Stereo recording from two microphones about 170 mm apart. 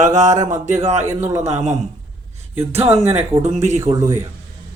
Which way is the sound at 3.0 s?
40° right (ahead or behind).